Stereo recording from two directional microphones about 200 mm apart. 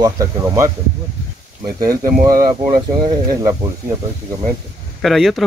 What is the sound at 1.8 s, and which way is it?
Speech, 15° right (ahead or behind).